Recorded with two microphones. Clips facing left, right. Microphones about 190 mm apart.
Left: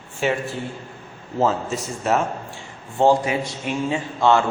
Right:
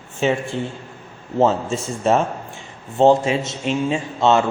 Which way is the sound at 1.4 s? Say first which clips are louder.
Right 3 dB; 25° right (ahead or behind).